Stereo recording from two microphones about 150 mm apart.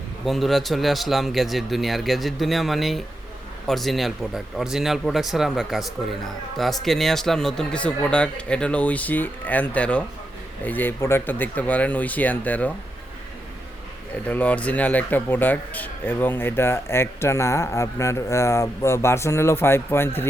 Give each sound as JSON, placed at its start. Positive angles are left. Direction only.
{"t": 0.3, "sound": "a man's voice", "side_deg": 0}
{"t": 14.3, "sound": "a man's voice", "side_deg": 10}